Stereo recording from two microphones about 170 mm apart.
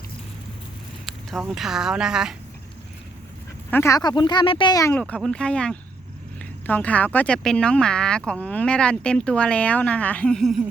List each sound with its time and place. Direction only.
1.0 s speech: centre (ahead or behind)
3.7 s speech: 15° left (ahead or behind)
4.9 s speech: 5° left (ahead or behind)